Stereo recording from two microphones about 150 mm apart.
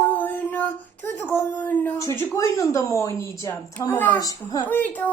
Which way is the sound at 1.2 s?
15° left (ahead or behind).